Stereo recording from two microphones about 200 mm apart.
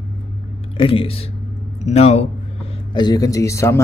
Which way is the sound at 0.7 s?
25° left (ahead or behind).